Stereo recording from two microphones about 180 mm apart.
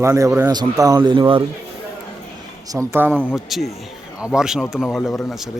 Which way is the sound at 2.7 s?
10° right (ahead or behind).